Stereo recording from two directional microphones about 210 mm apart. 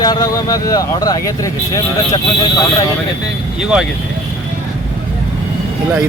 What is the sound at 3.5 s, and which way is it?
Speech, 5° right (ahead or behind).